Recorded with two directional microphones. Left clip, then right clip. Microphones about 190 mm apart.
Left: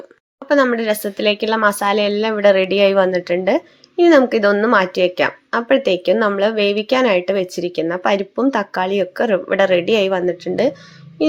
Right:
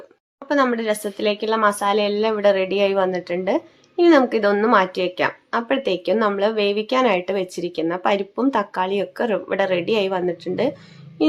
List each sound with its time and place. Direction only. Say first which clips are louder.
0.4 s speech: left 4 dB; 15° left (ahead or behind)